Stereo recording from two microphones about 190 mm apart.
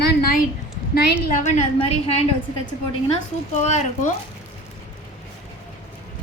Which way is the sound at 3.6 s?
40° left (ahead or behind).